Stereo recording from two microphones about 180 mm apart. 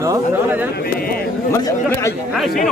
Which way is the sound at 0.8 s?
55° left (ahead or behind).